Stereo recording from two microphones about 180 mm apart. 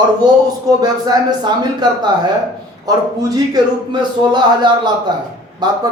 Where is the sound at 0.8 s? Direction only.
25° right (ahead or behind).